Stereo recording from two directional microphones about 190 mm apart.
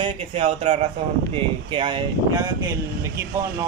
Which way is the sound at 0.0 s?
30° right (ahead or behind).